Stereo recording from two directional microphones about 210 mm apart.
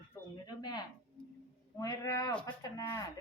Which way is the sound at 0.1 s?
20° left (ahead or behind).